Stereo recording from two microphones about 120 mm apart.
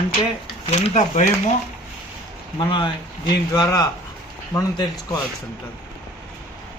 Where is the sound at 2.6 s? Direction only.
40° left (ahead or behind).